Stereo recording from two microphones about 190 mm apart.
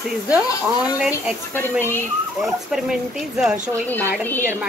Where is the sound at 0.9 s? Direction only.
5° right (ahead or behind).